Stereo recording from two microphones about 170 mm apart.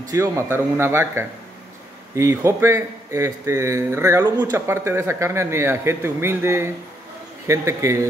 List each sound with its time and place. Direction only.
0.1 s speech: 15° right (ahead or behind)